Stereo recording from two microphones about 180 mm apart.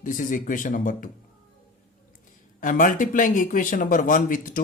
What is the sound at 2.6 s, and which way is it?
Speech, 50° left (ahead or behind).